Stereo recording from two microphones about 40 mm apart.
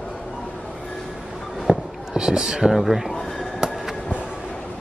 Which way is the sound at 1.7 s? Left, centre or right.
Right.